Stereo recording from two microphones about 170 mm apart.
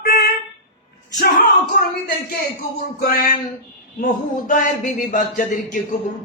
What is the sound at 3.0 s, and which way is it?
Speech, 55° left (ahead or behind).